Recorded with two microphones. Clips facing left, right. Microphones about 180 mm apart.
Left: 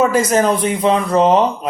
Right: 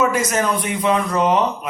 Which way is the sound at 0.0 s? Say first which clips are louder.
Left 5 dB; 30° left (ahead or behind).